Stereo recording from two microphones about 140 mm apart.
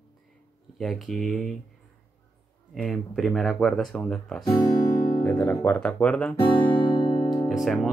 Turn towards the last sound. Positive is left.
turn(degrees=0)  # may be behind; listen again after turning